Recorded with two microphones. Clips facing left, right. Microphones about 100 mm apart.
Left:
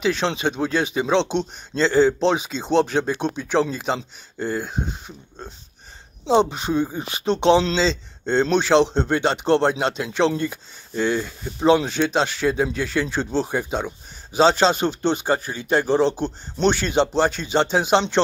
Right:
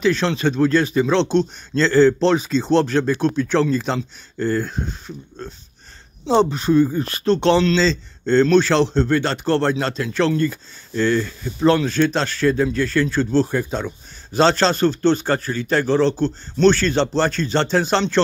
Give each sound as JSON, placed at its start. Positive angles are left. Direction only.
{"t": 0.0, "sound": "speech", "side_deg": 15}
{"t": 6.5, "sound": "speech", "side_deg": 15}